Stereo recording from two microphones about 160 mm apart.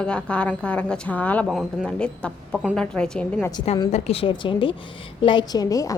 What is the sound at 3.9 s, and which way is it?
A woman's voice, 40° left (ahead or behind).